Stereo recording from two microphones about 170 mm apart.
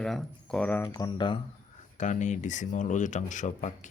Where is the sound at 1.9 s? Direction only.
45° left (ahead or behind).